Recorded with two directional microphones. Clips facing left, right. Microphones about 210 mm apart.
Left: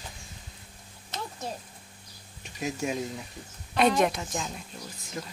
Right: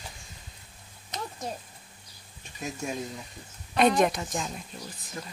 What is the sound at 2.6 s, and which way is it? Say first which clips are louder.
Speech: left 3 dB; 15° left (ahead or behind).